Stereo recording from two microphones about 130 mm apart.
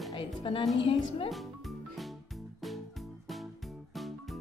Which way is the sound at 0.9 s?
45° left (ahead or behind).